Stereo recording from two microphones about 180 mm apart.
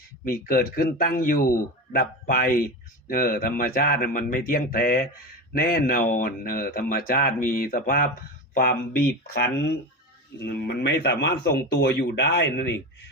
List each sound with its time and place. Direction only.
0.3 s a man's voice: 55° left (ahead or behind); by 12.7 s 75° left (ahead or behind)